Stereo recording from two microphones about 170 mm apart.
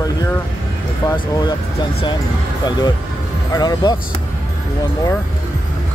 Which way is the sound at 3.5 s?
25° left (ahead or behind).